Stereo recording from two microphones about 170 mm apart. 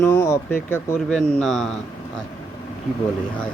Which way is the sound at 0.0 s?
15° left (ahead or behind).